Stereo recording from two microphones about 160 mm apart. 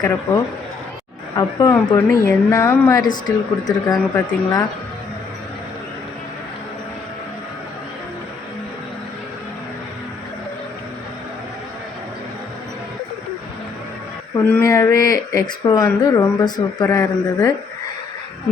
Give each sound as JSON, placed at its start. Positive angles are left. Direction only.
{"t": 1.4, "sound": "speech", "side_deg": 20}
{"t": 14.5, "sound": "speech", "side_deg": 15}